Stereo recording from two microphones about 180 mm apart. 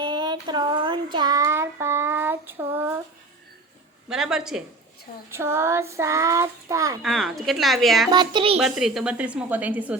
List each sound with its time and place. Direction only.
0.0 s child singing: 25° right (ahead or behind)
4.1 s a woman's voice: 5° right (ahead or behind)
5.3 s child singing: 15° right (ahead or behind)
7.0 s a woman's voice: centre (ahead or behind)
8.1 s a child's voice: 25° right (ahead or behind)
8.5 s child singing: centre (ahead or behind)